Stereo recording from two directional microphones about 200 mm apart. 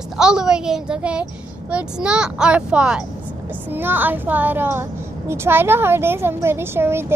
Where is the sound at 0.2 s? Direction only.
5° right (ahead or behind).